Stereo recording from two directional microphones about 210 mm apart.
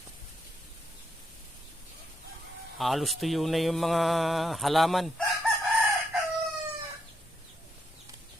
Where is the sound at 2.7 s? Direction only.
Centre (ahead or behind).